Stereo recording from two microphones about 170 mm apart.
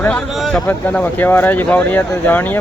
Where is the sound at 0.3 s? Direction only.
Centre (ahead or behind).